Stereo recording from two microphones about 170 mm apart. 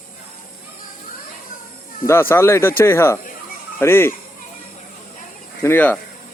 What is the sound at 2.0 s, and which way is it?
Speech, 15° left (ahead or behind).